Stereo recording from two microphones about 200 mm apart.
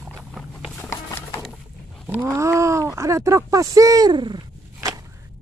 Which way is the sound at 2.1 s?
10° right (ahead or behind).